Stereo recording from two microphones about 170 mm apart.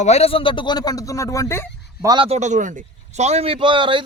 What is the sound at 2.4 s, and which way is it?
A man's voice, 45° right (ahead or behind).